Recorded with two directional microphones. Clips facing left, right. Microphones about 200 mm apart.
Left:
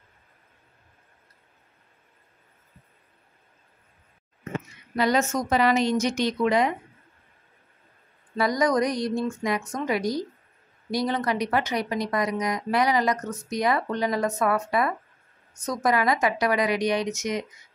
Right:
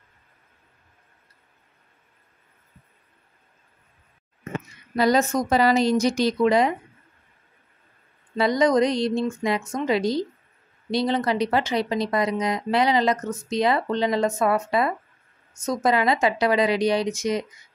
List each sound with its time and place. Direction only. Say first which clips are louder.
4.9 s a woman's voice: right 3 dB; 35° right (ahead or behind)
8.4 s speech: right 3 dB; 25° right (ahead or behind)